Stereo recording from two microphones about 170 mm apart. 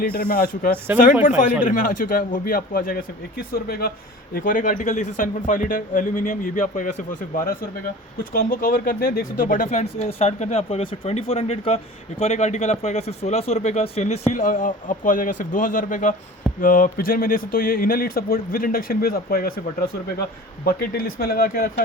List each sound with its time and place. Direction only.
0.0 s speech: 60° left (ahead or behind)
0.9 s speech: 10° right (ahead or behind)
1.6 s speech: 50° left (ahead or behind)